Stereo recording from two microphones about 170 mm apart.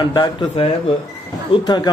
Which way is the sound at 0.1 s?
25° left (ahead or behind).